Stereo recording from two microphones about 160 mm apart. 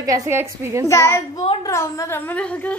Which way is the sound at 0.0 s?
20° right (ahead or behind).